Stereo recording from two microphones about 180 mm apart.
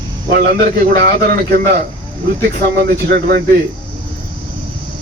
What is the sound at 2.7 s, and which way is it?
Speech, 60° right (ahead or behind).